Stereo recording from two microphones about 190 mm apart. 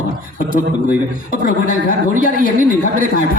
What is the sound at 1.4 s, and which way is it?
Speech, 45° left (ahead or behind).